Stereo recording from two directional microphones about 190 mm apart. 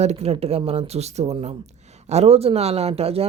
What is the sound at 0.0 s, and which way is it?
Speech, 35° right (ahead or behind).